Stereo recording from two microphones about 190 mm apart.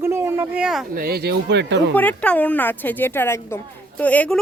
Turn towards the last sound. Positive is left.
turn(degrees=10)  # may be behind; listen again after turning